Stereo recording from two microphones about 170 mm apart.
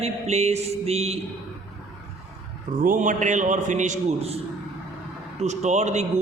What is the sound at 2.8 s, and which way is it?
A man's voice, 50° right (ahead or behind).